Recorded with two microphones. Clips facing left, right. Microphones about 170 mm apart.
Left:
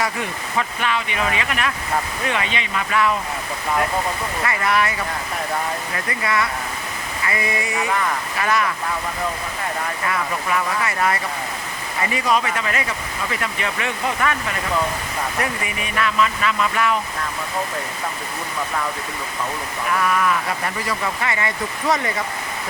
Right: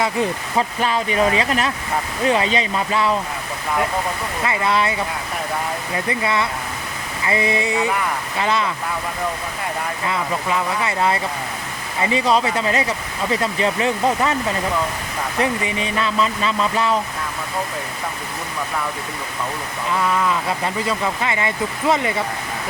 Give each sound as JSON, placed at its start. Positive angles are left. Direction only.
{"t": 0.0, "sound": "speech", "side_deg": -30}
{"t": 4.4, "sound": "speech", "side_deg": -20}
{"t": 6.1, "sound": "speech", "side_deg": -25}
{"t": 10.1, "sound": "speech", "side_deg": -20}
{"t": 15.4, "sound": "speech", "side_deg": -25}
{"t": 19.9, "sound": "speech", "side_deg": -20}